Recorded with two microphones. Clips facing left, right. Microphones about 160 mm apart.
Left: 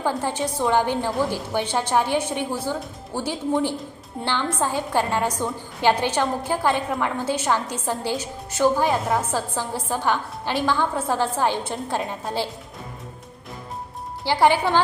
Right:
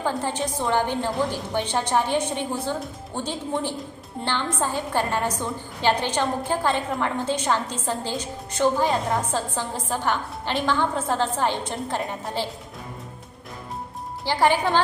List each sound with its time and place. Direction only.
0.0 s a woman's voice: 10° left (ahead or behind)
14.3 s a woman's voice: 10° left (ahead or behind)